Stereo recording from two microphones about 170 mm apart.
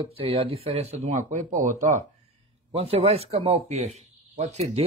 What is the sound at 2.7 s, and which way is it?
Speech, 35° right (ahead or behind).